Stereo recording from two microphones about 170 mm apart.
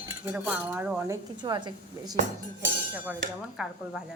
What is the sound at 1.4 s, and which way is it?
Speech, 25° right (ahead or behind).